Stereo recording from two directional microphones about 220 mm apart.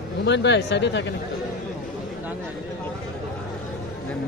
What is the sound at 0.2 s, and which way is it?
Speech, 50° left (ahead or behind).